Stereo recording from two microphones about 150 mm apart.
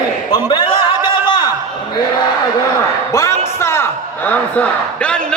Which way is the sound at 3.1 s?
20° left (ahead or behind).